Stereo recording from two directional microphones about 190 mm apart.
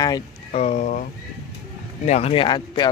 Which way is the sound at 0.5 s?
35° left (ahead or behind).